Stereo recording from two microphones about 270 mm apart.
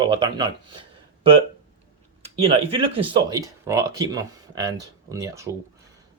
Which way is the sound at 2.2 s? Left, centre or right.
Right.